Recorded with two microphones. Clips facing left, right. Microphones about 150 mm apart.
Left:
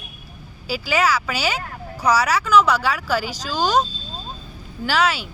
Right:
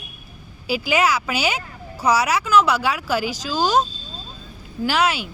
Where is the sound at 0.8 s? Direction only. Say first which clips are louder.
Even; 10° right (ahead or behind).